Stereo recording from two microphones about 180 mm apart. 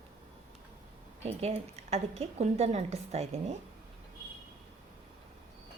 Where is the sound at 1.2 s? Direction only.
35° right (ahead or behind).